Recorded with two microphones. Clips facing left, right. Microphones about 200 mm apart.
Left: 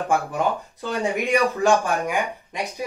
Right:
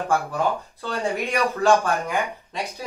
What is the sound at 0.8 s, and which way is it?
Speech, 15° left (ahead or behind).